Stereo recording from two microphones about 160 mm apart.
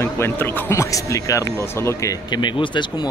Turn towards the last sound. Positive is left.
turn(degrees=30)  # may be behind; listen again after turning